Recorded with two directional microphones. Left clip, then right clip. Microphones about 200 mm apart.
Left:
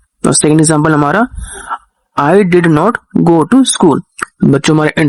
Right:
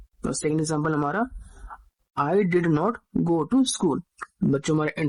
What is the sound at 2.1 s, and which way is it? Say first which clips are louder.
Speech: left 14 dB; 40° left (ahead or behind).